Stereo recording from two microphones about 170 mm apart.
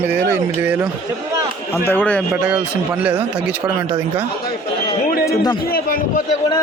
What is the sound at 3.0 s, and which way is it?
Speech, 10° right (ahead or behind).